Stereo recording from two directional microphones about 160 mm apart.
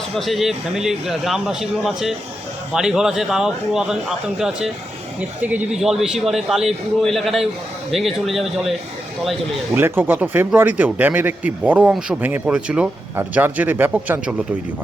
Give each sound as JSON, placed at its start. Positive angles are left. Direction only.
{"t": 0.2, "sound": "a man's voice", "side_deg": 0}
{"t": 9.7, "sound": "speech", "side_deg": -15}